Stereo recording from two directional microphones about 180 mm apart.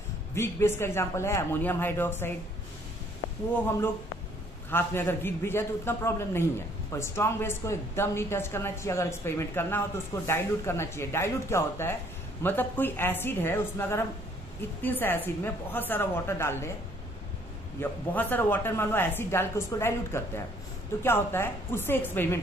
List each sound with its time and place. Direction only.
0.3 s a man's voice: 15° left (ahead or behind)
4.6 s a man's voice: 10° left (ahead or behind)
17.7 s a man's voice: 10° left (ahead or behind)